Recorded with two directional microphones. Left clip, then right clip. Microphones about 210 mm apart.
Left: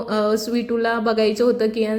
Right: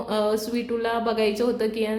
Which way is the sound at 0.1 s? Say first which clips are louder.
Left 4 dB; 15° left (ahead or behind).